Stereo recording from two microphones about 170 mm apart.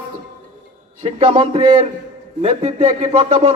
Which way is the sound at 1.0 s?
30° right (ahead or behind).